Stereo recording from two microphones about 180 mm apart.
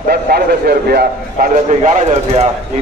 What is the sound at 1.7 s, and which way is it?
Speech, 40° right (ahead or behind).